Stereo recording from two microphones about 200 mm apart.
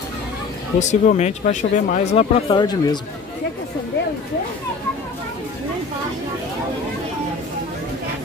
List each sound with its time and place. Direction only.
0.7 s speech: 35° left (ahead or behind); by 3.0 s 20° left (ahead or behind)